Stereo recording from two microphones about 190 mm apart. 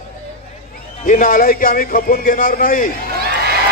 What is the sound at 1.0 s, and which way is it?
Speech, 45° left (ahead or behind).